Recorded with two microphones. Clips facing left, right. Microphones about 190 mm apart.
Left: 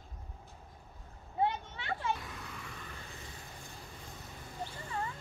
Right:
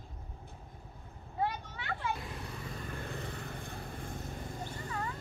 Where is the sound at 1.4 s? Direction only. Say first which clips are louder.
Left 2 dB; 25° left (ahead or behind).